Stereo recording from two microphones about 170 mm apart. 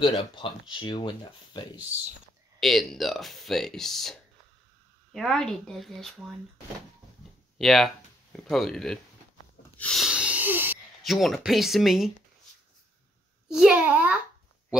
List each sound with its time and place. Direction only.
0.0 s speech: 30° left (ahead or behind)
2.6 s speech: centre (ahead or behind)
7.5 s speech: centre (ahead or behind)
9.8 s wheeze: centre (ahead or behind)
11.0 s speech: centre (ahead or behind)
13.5 s a child's voice: 5° right (ahead or behind)